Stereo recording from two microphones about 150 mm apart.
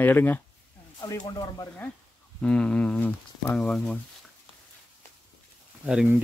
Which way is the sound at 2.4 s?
5° left (ahead or behind).